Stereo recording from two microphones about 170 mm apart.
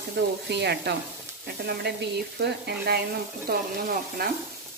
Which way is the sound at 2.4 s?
75° right (ahead or behind).